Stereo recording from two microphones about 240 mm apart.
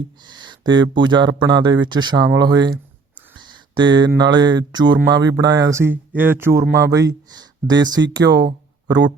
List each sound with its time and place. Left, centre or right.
0.3 s speech: centre